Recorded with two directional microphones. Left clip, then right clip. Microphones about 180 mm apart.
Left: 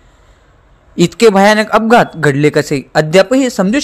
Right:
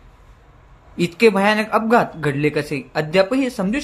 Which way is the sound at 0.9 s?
45° left (ahead or behind).